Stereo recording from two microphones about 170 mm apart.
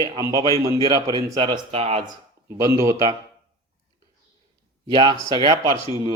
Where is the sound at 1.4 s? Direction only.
35° right (ahead or behind).